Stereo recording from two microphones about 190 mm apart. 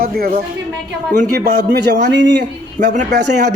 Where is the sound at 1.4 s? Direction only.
55° right (ahead or behind).